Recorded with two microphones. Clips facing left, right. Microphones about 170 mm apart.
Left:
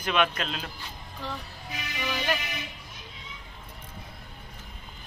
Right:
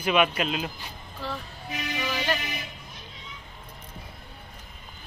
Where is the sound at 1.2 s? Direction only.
20° left (ahead or behind).